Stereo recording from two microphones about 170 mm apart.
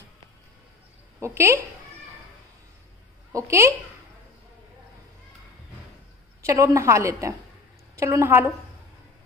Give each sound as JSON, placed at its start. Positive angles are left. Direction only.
{"t": 1.2, "sound": "a woman's voice", "side_deg": -15}
{"t": 3.3, "sound": "a woman's voice", "side_deg": -15}
{"t": 6.4, "sound": "a woman's voice", "side_deg": -20}